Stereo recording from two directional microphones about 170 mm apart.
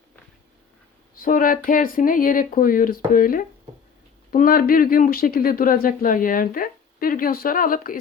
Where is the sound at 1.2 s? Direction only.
55° left (ahead or behind).